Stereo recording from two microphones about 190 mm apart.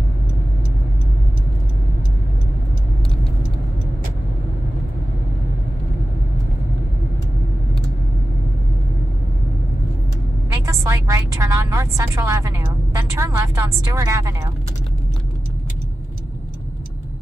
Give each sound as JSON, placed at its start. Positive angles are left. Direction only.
{"t": 10.6, "sound": "vehicle", "side_deg": -15}